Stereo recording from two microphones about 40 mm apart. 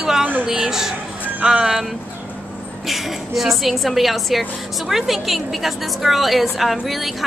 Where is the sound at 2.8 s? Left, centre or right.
Centre.